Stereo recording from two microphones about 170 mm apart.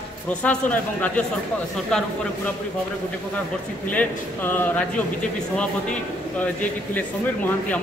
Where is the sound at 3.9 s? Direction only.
10° left (ahead or behind).